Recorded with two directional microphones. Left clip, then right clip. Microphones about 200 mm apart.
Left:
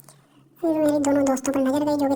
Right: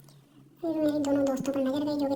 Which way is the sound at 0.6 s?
30° left (ahead or behind).